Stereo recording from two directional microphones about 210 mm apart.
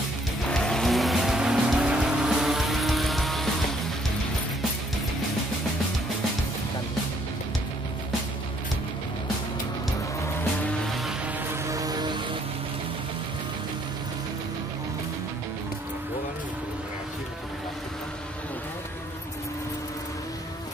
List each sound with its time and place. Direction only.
0.5 s vehicle: 5° left (ahead or behind)
11.5 s music: 15° right (ahead or behind)